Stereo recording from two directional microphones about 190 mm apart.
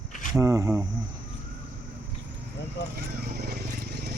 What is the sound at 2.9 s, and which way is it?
Vehicle, 55° right (ahead or behind).